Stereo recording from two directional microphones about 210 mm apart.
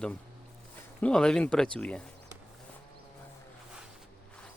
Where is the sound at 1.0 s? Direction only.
5° left (ahead or behind).